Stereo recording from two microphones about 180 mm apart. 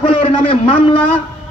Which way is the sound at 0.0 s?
30° left (ahead or behind).